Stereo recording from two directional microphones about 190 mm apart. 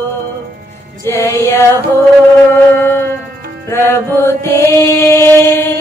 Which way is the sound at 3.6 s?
15° left (ahead or behind).